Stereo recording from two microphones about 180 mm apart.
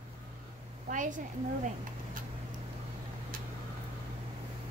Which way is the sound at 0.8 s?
45° right (ahead or behind).